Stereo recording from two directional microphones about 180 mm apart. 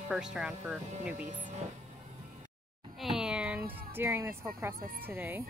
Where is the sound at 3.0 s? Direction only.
Centre (ahead or behind).